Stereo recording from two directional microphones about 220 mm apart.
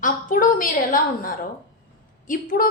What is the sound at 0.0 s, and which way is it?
A woman's voice, 40° left (ahead or behind).